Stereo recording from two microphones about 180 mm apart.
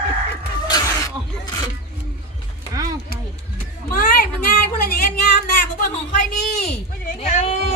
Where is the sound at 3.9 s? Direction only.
50° left (ahead or behind).